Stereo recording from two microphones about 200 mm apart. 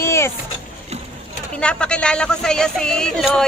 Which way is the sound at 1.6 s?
5° left (ahead or behind).